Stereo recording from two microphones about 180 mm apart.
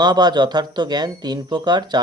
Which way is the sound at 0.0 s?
25° right (ahead or behind).